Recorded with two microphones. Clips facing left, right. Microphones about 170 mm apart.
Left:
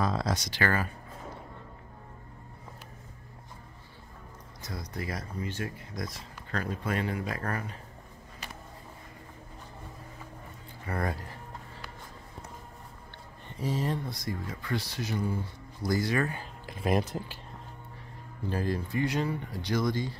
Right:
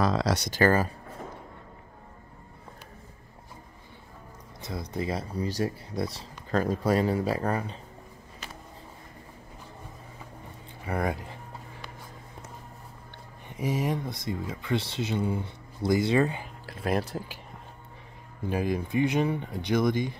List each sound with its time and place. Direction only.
0.0 s speech: 85° right
0.5 s speech: 40° right (ahead or behind)
4.6 s speech: 25° right (ahead or behind)
10.8 s speech: 15° right (ahead or behind)
13.5 s speech: 15° right (ahead or behind)
16.6 s speech: centre (ahead or behind)
18.5 s speech: 15° right (ahead or behind)